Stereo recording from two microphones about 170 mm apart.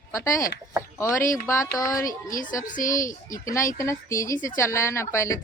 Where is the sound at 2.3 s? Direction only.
50° left (ahead or behind).